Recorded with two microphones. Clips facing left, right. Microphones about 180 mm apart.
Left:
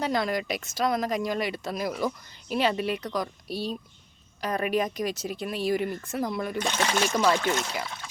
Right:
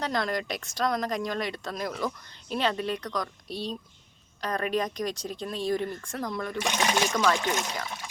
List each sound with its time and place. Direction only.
0.0 s speech: 5° left (ahead or behind)
6.7 s speech: 15° right (ahead or behind)
7.1 s speech: 15° left (ahead or behind)